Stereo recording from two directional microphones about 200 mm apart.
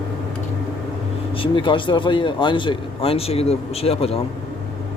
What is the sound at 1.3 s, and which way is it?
Speech, 25° left (ahead or behind).